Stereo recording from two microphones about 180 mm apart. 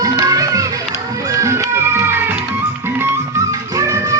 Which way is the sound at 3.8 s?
20° right (ahead or behind).